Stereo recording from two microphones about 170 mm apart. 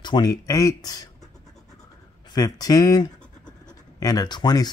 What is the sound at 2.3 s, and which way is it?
Speech, 20° left (ahead or behind).